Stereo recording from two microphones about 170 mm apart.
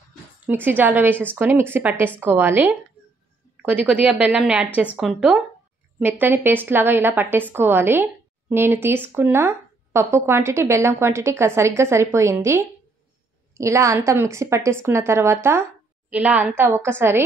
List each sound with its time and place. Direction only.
0.5 s a woman's voice: 10° right (ahead or behind)